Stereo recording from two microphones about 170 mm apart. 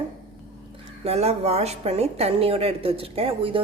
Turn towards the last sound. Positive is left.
turn(degrees=-30)  # may be behind; listen again after turning